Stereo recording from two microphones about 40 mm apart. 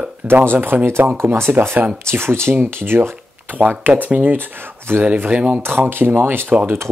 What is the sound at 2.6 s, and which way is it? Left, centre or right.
Speech, right.